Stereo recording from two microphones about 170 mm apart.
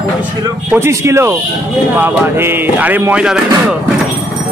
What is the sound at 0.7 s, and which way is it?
A man's voice, 15° right (ahead or behind).